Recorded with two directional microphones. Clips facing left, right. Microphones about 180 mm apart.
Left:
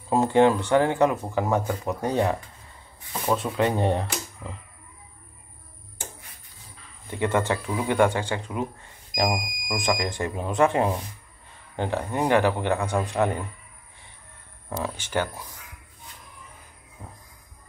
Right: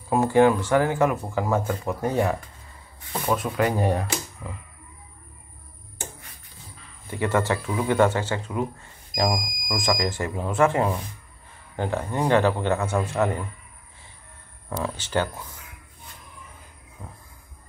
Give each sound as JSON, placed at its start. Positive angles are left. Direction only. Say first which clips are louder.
{"t": 0.1, "sound": "speech", "louder": "right 1 dB", "side_deg": 20}
{"t": 3.5, "sound": "speech", "louder": "even", "side_deg": 25}
{"t": 7.1, "sound": "a man's voice", "louder": "right 1 dB", "side_deg": 20}
{"t": 14.7, "sound": "a man's voice", "louder": "right 1 dB", "side_deg": 15}
{"t": 17.0, "sound": "a man's voice", "louder": "right 1 dB", "side_deg": 15}